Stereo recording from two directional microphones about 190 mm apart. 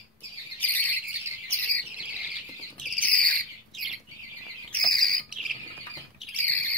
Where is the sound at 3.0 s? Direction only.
10° left (ahead or behind).